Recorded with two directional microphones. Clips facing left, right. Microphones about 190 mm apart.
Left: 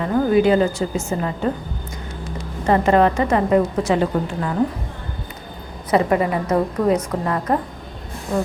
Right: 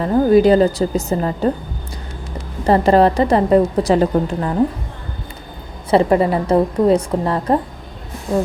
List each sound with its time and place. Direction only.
0.0 s a woman's voice: 35° right (ahead or behind)
2.6 s a woman's voice: 35° right (ahead or behind)
5.9 s a woman's voice: 30° right (ahead or behind)